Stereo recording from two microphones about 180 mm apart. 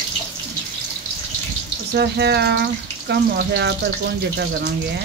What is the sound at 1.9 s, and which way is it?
Speech, 65° right (ahead or behind).